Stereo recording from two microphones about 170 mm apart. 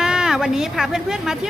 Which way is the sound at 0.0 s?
5° right (ahead or behind).